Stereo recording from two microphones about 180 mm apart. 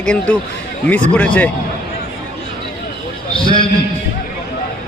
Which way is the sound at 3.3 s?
30° left (ahead or behind).